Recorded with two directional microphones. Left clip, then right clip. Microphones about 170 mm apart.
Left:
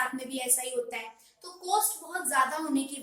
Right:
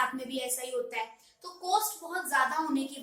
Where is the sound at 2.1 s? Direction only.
15° left (ahead or behind).